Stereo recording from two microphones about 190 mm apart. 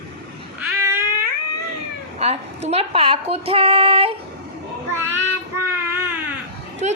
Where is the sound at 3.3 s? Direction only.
30° right (ahead or behind).